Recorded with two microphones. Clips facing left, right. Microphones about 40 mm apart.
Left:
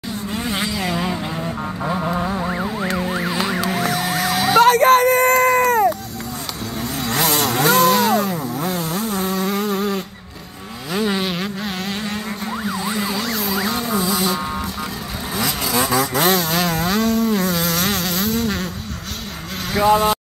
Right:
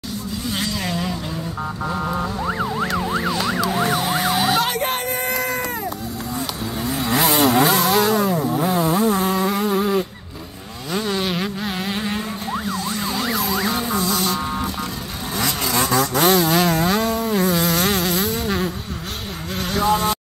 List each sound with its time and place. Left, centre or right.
2.0 s music: centre
3.0 s emergency vehicle: centre
3.7 s emergency vehicle: centre
4.6 s whimper: left
6.8 s vehicle: centre
8.5 s chainsaw: centre
9.2 s a sound: centre
11.1 s vehicle: centre
12.6 s emergency vehicle: centre
13.2 s vehicle: centre
19.8 s insect: centre